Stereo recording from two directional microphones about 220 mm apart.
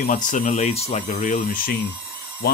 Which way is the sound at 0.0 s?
35° left (ahead or behind).